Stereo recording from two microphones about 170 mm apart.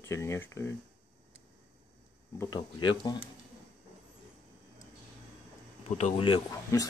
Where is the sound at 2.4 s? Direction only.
25° left (ahead or behind).